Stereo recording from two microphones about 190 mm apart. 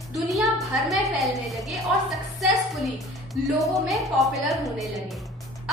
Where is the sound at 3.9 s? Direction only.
Centre (ahead or behind).